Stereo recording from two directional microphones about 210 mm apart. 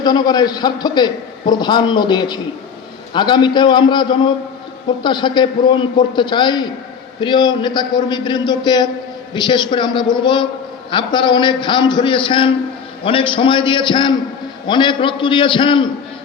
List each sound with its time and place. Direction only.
0.0 s a man's voice: 20° left (ahead or behind)